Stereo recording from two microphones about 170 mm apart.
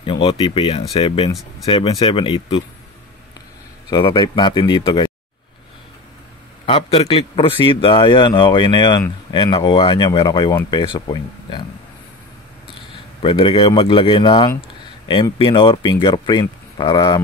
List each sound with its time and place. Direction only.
0.0 s speech: 30° left (ahead or behind)
3.9 s a man's voice: 25° left (ahead or behind)
6.6 s a man's voice: 35° left (ahead or behind)
13.2 s a man's voice: 30° left (ahead or behind)